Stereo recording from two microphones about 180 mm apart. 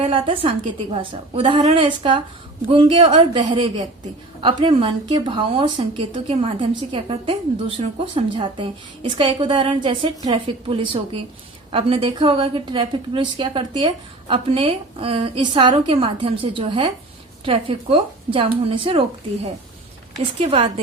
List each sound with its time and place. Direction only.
0.0 s a woman's voice: 30° right (ahead or behind)
20.4 s a woman's voice: 35° right (ahead or behind)